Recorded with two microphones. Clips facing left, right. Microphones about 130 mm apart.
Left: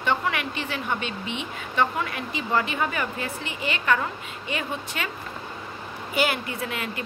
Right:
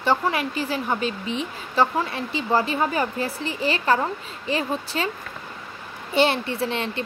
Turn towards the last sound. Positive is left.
turn(degrees=-30)  # may be behind; listen again after turning